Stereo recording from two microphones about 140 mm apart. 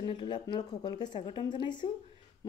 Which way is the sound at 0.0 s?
35° left (ahead or behind).